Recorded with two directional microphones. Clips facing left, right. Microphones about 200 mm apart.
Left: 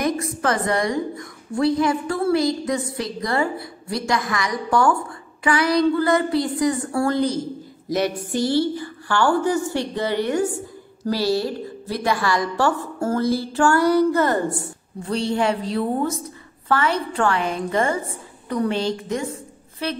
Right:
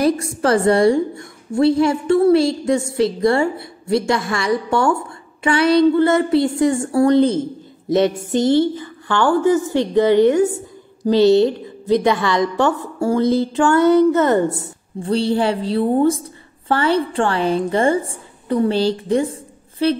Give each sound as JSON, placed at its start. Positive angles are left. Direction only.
{"t": 0.0, "sound": "a woman's voice", "side_deg": -30}